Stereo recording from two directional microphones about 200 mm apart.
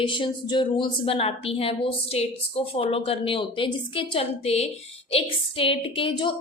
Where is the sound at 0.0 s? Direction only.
25° left (ahead or behind).